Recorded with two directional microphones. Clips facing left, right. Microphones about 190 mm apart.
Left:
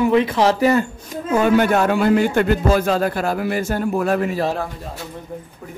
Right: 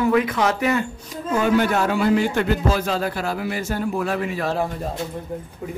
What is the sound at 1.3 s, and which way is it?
A man's voice, 55° left (ahead or behind).